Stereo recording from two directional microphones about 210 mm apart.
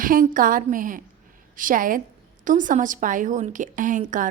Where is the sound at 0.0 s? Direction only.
40° right (ahead or behind).